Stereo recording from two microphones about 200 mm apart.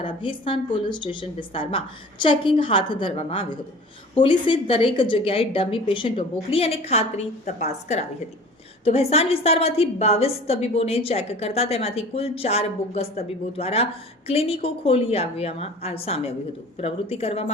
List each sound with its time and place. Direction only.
0.0 s a woman's voice: 25° left (ahead or behind)